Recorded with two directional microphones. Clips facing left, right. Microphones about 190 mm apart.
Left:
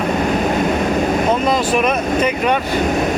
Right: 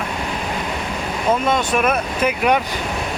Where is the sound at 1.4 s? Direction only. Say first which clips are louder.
Left 2 dB; centre (ahead or behind).